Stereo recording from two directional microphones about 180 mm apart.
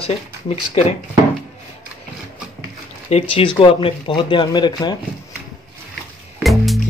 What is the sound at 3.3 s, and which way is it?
Speech, 30° left (ahead or behind).